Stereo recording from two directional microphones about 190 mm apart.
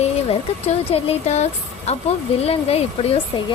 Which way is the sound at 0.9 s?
35° left (ahead or behind).